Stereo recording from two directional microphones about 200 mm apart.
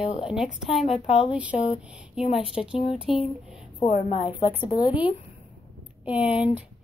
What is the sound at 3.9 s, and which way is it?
Speech, 35° left (ahead or behind).